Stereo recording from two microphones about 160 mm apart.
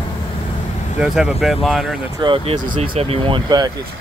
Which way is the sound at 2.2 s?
30° right (ahead or behind).